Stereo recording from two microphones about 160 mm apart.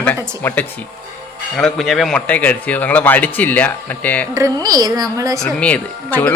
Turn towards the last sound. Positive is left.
turn(degrees=10)  # may be behind; listen again after turning